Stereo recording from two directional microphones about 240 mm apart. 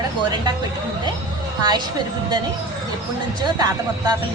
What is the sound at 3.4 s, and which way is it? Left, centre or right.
Speech, centre.